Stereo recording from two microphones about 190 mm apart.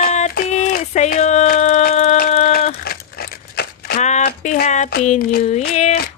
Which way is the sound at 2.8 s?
55° left (ahead or behind).